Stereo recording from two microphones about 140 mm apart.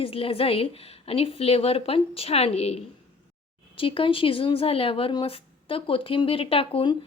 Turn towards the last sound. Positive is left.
turn(degrees=40)  # may be behind; listen again after turning